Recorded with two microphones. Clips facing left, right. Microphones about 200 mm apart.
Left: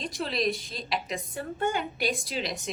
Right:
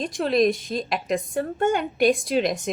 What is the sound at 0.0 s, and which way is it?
A woman's voice, 50° right (ahead or behind).